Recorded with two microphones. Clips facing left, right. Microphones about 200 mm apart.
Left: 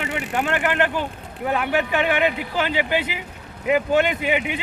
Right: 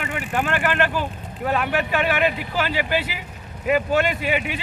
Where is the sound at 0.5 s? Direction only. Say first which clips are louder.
Left 1 dB; 20° left (ahead or behind).